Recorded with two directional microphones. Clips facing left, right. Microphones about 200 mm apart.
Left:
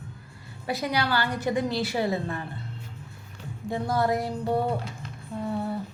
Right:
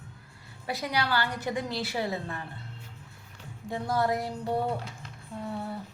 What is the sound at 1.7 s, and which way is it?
Speech, 15° left (ahead or behind).